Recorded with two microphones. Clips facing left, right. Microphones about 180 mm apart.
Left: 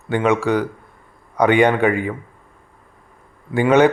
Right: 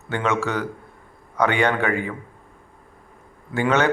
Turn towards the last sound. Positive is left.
turn(degrees=15)  # may be behind; listen again after turning